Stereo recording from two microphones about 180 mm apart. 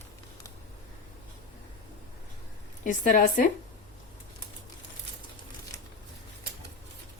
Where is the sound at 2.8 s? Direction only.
45° left (ahead or behind).